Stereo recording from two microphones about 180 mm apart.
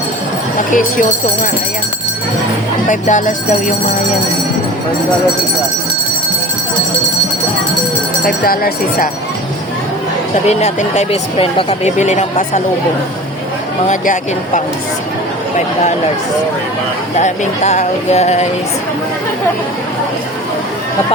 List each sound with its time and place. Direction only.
2.9 s speech: 45° left (ahead or behind)
8.4 s speech: 55° left (ahead or behind)
10.4 s speech: 40° left (ahead or behind)
13.8 s speech: 45° left (ahead or behind)
17.2 s speech: 40° left (ahead or behind)